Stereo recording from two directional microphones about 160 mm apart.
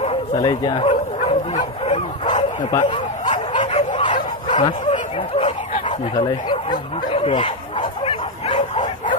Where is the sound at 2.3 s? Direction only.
50° left (ahead or behind).